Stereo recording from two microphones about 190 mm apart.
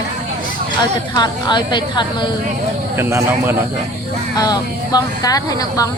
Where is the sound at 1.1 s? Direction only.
25° left (ahead or behind).